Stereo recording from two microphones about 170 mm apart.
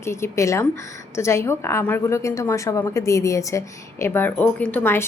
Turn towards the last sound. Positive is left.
turn(degrees=15)  # may be behind; listen again after turning